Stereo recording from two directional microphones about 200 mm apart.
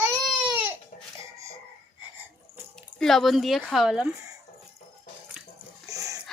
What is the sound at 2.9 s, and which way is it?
A woman's voice, centre (ahead or behind).